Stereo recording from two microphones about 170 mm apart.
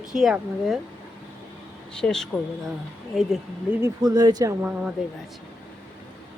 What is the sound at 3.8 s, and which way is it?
Speech, 20° right (ahead or behind).